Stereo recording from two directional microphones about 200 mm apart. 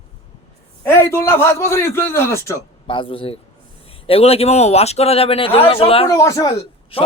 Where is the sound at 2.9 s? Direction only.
25° left (ahead or behind).